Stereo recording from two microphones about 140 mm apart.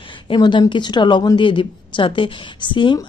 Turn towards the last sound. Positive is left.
turn(degrees=35)  # may be behind; listen again after turning